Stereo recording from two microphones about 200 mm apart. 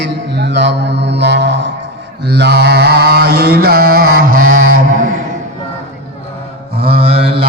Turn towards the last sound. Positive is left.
turn(degrees=-30)  # may be behind; listen again after turning